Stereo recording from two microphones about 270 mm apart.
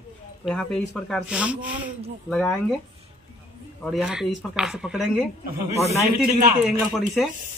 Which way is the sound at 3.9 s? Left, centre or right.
Centre.